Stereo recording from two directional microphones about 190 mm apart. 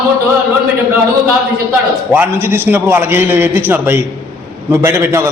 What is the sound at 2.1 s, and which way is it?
A man's voice, 10° right (ahead or behind).